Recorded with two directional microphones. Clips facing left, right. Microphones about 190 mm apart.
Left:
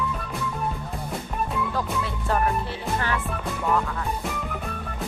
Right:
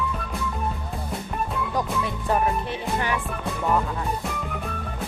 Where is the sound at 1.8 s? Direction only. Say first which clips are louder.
Right 2 dB; 15° right (ahead or behind).